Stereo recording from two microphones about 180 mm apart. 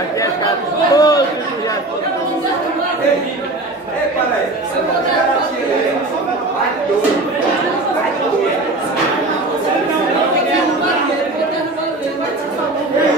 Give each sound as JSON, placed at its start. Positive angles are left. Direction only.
{"t": 0.9, "sound": "chatter", "side_deg": 20}